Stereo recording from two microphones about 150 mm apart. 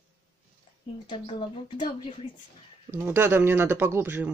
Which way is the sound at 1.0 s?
35° left (ahead or behind).